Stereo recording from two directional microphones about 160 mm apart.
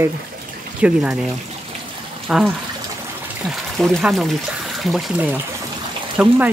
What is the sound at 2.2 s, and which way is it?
Speech, 5° right (ahead or behind).